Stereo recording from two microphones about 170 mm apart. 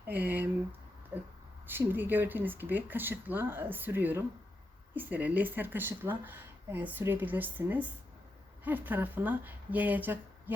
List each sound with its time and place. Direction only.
0.1 s speech: 10° right (ahead or behind)
1.6 s speech: 10° right (ahead or behind)